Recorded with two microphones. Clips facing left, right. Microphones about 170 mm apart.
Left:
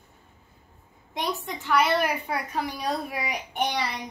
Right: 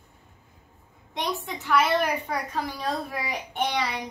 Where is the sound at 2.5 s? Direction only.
15° left (ahead or behind).